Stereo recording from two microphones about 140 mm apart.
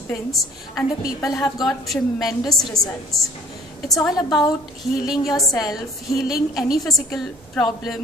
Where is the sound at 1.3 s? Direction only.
25° left (ahead or behind).